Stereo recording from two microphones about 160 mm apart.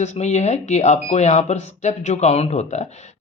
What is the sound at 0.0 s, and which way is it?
Speech, 45° left (ahead or behind).